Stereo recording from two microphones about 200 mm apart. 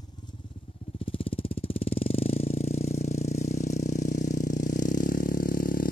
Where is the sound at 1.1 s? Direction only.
25° left (ahead or behind).